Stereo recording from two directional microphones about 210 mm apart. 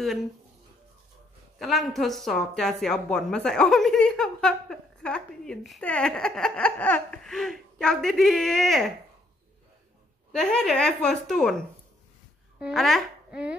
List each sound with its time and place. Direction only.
1.6 s speech: centre (ahead or behind)
10.3 s a child's voice: 5° left (ahead or behind)